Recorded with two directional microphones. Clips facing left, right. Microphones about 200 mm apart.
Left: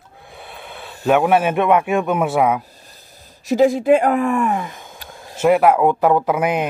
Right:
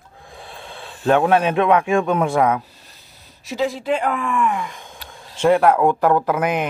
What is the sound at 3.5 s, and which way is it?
Speech, 45° left (ahead or behind).